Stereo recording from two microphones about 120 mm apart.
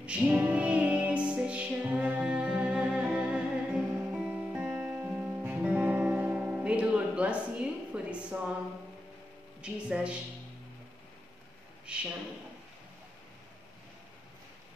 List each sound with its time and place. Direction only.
0.0 s music: 10° right (ahead or behind)
9.6 s speech: 10° right (ahead or behind)
11.8 s speech: 10° right (ahead or behind)